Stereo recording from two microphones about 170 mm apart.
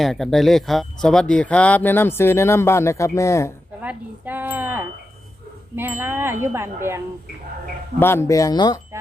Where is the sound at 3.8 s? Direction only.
10° right (ahead or behind).